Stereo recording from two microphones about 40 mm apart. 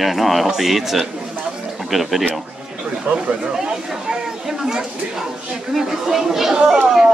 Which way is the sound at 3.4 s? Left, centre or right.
Centre.